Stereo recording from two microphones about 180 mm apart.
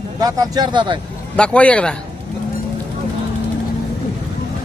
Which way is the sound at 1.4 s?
5° left (ahead or behind).